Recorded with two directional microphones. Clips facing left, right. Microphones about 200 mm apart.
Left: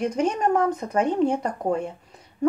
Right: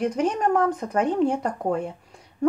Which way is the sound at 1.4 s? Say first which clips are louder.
Even; 10° left (ahead or behind).